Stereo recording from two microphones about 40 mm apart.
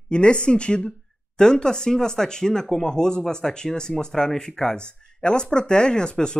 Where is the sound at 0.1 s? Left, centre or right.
Left.